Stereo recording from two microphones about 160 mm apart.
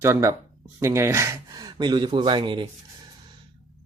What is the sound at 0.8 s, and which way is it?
Speech, 20° right (ahead or behind).